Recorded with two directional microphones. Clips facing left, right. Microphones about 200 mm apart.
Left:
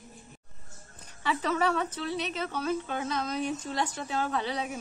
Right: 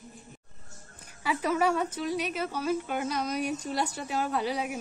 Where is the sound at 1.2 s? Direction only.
10° right (ahead or behind).